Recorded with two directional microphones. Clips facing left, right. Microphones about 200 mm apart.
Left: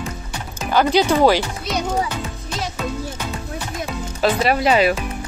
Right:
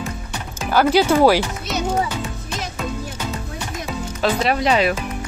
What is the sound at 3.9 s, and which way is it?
Speech, 5° left (ahead or behind).